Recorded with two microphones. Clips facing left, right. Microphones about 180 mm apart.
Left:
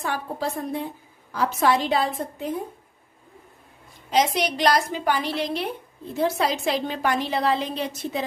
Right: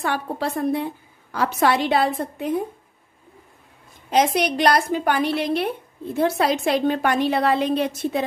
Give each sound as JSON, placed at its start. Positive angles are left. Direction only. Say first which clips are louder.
{"t": 0.0, "sound": "a woman's voice", "louder": "right 3 dB", "side_deg": -70}
{"t": 4.1, "sound": "a woman's voice", "louder": "right 3 dB", "side_deg": -55}